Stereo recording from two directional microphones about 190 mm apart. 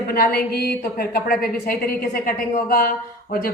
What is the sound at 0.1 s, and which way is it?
A woman's voice, 55° left (ahead or behind).